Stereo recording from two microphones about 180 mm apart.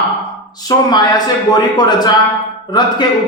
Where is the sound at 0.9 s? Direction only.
20° left (ahead or behind).